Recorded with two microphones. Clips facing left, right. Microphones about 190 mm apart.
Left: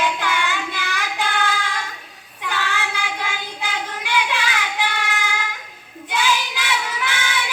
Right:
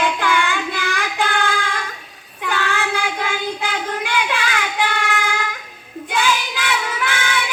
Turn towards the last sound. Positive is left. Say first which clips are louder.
# right 3 dB
turn(degrees=-50)  # may be behind; listen again after turning